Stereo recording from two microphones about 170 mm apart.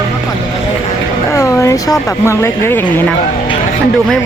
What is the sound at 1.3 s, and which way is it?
A woman's voice, 15° left (ahead or behind).